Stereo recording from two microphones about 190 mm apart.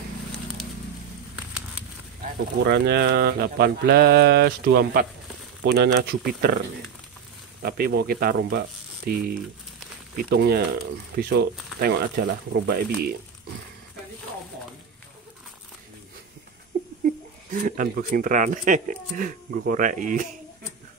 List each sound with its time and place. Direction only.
2.6 s speech: 60° right (ahead or behind)
7.6 s speech: 55° right (ahead or behind)
10.3 s speech: 55° right (ahead or behind)
17.0 s speech: 45° right (ahead or behind)